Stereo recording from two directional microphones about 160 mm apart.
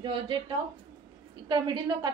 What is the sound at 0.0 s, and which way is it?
Speech, 30° right (ahead or behind).